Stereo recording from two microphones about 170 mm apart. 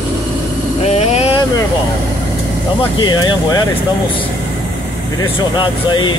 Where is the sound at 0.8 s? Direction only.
40° left (ahead or behind).